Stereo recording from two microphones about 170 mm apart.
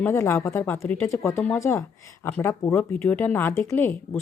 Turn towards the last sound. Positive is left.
turn(degrees=15)  # may be behind; listen again after turning